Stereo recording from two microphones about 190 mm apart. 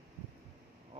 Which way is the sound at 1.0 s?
30° right (ahead or behind).